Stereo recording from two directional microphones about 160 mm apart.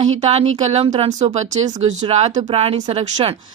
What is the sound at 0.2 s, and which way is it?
A woman's voice, 45° right (ahead or behind).